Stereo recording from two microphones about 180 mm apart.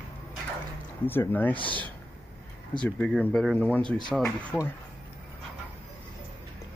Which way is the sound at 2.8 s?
5° left (ahead or behind).